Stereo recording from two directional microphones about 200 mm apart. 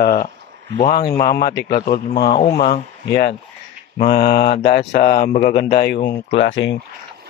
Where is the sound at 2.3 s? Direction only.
35° left (ahead or behind).